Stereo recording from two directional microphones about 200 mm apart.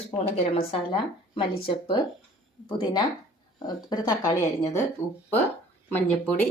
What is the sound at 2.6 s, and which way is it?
Speech, 25° left (ahead or behind).